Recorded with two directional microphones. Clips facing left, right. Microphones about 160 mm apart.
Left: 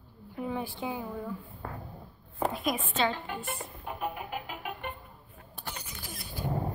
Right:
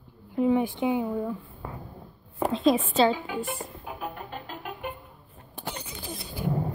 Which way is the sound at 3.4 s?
Centre (ahead or behind).